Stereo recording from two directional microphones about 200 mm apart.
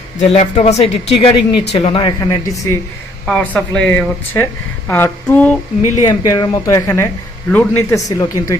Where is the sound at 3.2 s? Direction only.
5° left (ahead or behind).